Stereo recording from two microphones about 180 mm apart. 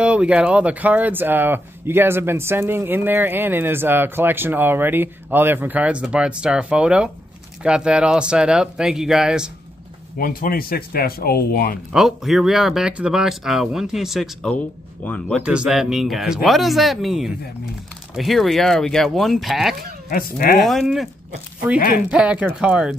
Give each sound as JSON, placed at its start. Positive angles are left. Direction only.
{"t": 0.0, "sound": "speech", "side_deg": -5}
{"t": 10.1, "sound": "speech", "side_deg": 55}
{"t": 11.9, "sound": "speech", "side_deg": 0}
{"t": 15.4, "sound": "speech", "side_deg": -5}
{"t": 20.1, "sound": "speech", "side_deg": 55}
{"t": 20.6, "sound": "speech", "side_deg": 0}
{"t": 21.7, "sound": "speech", "side_deg": 50}
{"t": 22.1, "sound": "speech", "side_deg": -5}